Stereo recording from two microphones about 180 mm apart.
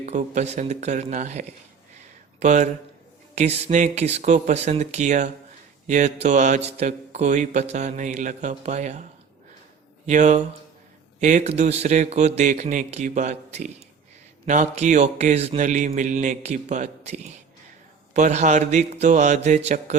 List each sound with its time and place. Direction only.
0.0 s mantra: 40° right (ahead or behind)
2.4 s speech: 40° right (ahead or behind)
3.3 s mantra: 35° right (ahead or behind)
10.1 s mantra: 40° right (ahead or behind)